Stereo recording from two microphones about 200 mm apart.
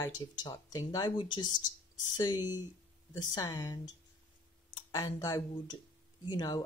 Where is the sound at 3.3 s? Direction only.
15° left (ahead or behind).